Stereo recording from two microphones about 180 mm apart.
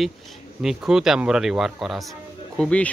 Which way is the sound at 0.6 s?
5° right (ahead or behind).